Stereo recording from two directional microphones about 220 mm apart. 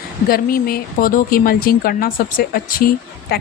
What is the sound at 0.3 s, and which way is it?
Speech, 40° left (ahead or behind).